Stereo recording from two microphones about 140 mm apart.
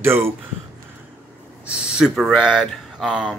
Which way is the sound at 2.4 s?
5° right (ahead or behind).